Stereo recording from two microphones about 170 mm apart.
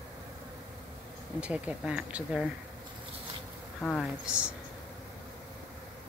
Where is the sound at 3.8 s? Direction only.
Centre (ahead or behind).